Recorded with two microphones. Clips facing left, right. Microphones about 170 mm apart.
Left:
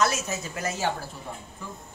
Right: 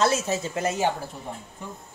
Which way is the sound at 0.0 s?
30° right (ahead or behind).